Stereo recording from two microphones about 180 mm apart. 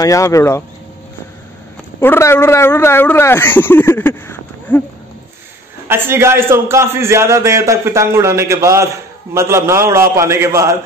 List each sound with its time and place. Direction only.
0.0 s speech: 15° left (ahead or behind)
2.0 s speech: 15° left (ahead or behind)
5.9 s a man's voice: 15° right (ahead or behind)